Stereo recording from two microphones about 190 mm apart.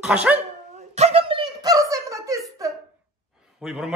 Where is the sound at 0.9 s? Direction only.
35° right (ahead or behind); by 2.4 s 15° right (ahead or behind).